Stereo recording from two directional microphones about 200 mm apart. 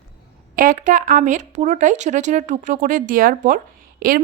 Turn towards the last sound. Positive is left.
turn(degrees=-45)  # may be behind; listen again after turning